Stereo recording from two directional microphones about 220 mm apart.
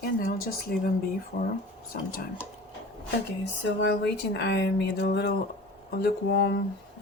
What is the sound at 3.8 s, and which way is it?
Speech, 50° left (ahead or behind).